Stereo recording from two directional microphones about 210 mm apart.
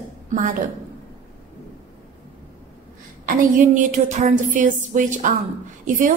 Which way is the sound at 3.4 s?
40° right (ahead or behind).